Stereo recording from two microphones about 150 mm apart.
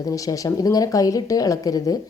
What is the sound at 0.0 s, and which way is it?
A woman's voice, 25° left (ahead or behind).